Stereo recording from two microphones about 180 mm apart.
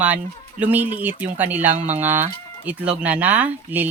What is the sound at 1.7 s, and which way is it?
Speech, 40° right (ahead or behind).